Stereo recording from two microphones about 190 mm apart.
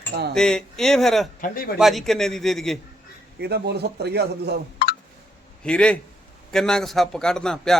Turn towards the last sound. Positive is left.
turn(degrees=5)  # may be behind; listen again after turning